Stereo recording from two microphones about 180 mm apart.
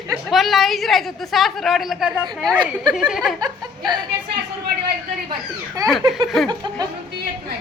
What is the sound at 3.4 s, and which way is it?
Speech, 20° right (ahead or behind).